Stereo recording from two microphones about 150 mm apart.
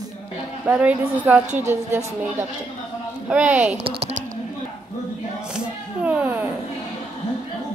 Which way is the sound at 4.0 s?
55° right (ahead or behind).